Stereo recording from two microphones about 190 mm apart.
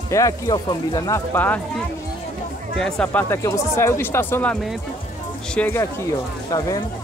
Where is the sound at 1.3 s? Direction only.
10° left (ahead or behind).